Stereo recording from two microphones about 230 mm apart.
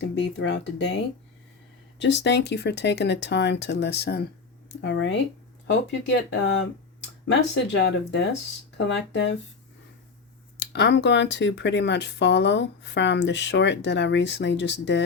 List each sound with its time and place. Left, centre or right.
0.0 s speech: left
2.0 s speech: left
10.6 s speech: left